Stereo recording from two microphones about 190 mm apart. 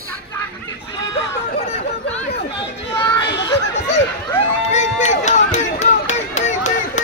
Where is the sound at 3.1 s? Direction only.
20° left (ahead or behind).